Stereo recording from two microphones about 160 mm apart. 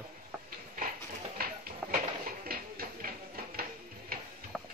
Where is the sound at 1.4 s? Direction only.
70° right (ahead or behind).